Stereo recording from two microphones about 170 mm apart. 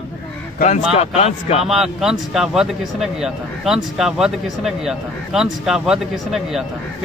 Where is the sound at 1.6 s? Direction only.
5° right (ahead or behind).